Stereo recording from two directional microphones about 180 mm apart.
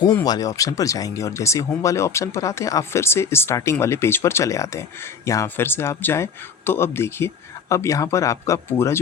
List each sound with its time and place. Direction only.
0.3 s speech: 20° left (ahead or behind)